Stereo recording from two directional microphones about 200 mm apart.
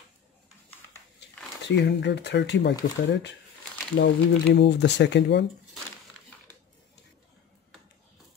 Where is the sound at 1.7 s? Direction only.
60° left (ahead or behind).